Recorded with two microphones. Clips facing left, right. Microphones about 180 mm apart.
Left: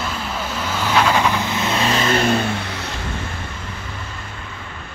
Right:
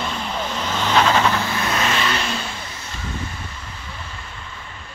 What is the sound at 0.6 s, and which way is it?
Vehicle, 10° left (ahead or behind).